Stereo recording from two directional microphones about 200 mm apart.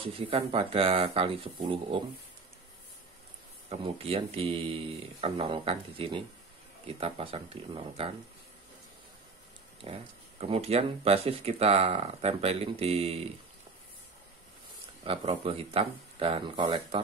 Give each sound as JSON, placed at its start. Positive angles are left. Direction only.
{"t": 0.0, "sound": "speech", "side_deg": -30}
{"t": 3.6, "sound": "speech", "side_deg": -30}
{"t": 9.8, "sound": "speech", "side_deg": -30}
{"t": 15.0, "sound": "speech", "side_deg": -30}